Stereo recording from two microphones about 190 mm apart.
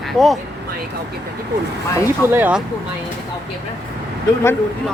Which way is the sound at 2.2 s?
10° right (ahead or behind).